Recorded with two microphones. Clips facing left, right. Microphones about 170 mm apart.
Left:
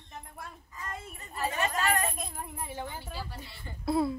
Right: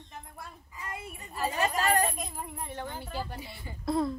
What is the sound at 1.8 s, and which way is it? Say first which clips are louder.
Speech: right 3 dB; 35° right (ahead or behind).